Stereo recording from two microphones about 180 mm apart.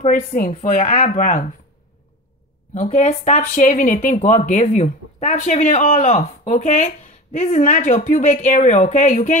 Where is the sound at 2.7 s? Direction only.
40° left (ahead or behind).